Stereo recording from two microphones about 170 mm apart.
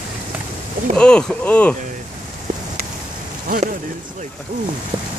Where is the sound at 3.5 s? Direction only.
55° right (ahead or behind).